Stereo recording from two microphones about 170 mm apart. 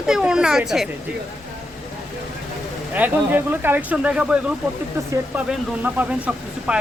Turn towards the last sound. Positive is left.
turn(degrees=-5)  # may be behind; listen again after turning